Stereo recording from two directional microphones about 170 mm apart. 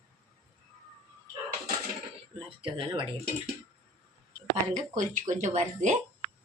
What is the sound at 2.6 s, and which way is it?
Speech, 30° right (ahead or behind).